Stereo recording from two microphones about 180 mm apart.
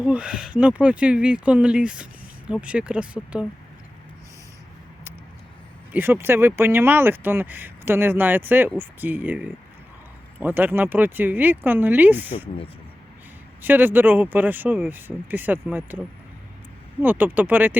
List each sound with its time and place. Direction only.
0.0 s speech: 5° right (ahead or behind)
5.9 s speech: 10° right (ahead or behind)
13.6 s speech: 10° right (ahead or behind)
17.0 s speech: 10° right (ahead or behind)